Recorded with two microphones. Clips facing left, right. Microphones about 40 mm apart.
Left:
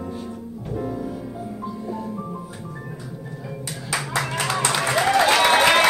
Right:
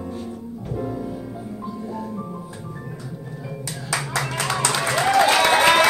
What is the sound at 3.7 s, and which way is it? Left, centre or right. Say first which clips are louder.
Clapping: even; centre.